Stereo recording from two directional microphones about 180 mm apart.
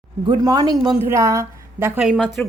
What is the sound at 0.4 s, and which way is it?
A woman's voice, 20° right (ahead or behind).